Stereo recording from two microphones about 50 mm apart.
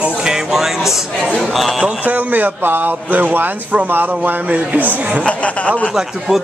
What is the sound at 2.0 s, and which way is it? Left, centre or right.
Speech, right.